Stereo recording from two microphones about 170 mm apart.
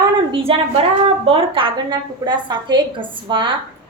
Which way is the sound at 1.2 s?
35° right (ahead or behind).